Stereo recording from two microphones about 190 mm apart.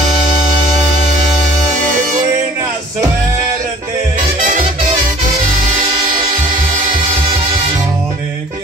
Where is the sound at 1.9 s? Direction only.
40° right (ahead or behind).